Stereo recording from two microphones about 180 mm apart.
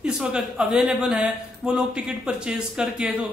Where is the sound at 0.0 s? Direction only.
5° right (ahead or behind).